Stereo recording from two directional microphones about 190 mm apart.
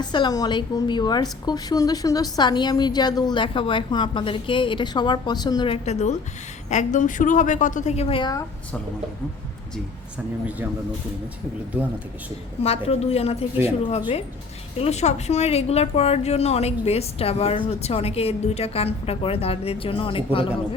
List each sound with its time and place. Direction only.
0.0 s a woman's voice: 25° left (ahead or behind)
12.6 s a woman's voice: 35° left (ahead or behind)